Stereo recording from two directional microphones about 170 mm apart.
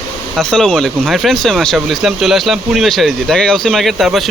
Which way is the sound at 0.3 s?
5° left (ahead or behind).